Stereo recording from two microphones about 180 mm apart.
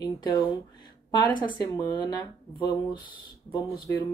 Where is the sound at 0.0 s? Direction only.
25° left (ahead or behind).